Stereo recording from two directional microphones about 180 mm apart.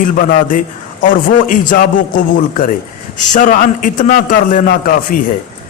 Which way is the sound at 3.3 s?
50° left (ahead or behind).